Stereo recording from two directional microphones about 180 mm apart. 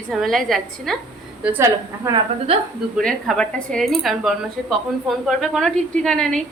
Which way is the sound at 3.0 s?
5° left (ahead or behind).